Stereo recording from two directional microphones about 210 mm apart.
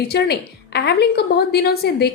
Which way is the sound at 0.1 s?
50° left (ahead or behind).